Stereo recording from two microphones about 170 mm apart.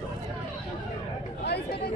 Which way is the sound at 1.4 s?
75° left (ahead or behind).